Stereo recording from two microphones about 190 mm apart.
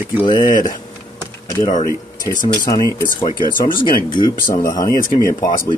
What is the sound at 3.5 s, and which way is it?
Speech, 45° left (ahead or behind).